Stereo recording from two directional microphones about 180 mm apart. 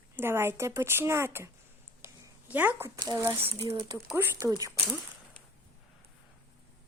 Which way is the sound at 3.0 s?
20° right (ahead or behind).